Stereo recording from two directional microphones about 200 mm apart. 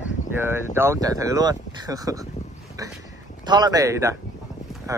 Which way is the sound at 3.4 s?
20° right (ahead or behind).